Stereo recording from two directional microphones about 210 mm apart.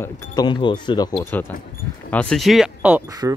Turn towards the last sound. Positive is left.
turn(degrees=-15)  # may be behind; listen again after turning